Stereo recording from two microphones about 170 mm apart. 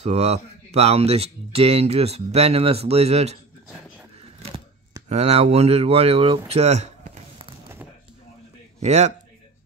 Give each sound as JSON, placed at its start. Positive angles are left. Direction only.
{"t": 0.0, "sound": "speech", "side_deg": -40}
{"t": 5.0, "sound": "speech", "side_deg": -40}
{"t": 8.7, "sound": "a man's voice", "side_deg": -40}